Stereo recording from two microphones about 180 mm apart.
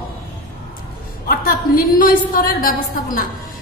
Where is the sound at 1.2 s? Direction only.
55° left (ahead or behind).